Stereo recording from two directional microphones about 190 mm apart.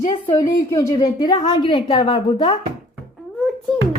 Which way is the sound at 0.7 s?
15° left (ahead or behind).